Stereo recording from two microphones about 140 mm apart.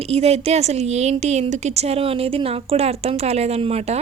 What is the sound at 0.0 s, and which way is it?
A woman's voice, 45° right (ahead or behind).